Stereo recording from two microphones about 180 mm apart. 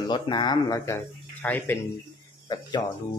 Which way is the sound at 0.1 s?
25° left (ahead or behind).